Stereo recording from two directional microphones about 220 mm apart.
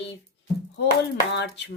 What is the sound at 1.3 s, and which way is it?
Speech, 50° left (ahead or behind).